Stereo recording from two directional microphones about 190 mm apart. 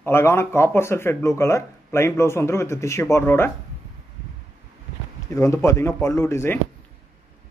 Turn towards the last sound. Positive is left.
turn(degrees=15)  # may be behind; listen again after turning